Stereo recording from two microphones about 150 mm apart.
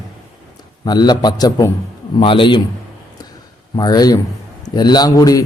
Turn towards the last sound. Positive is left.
turn(degrees=25)  # may be behind; listen again after turning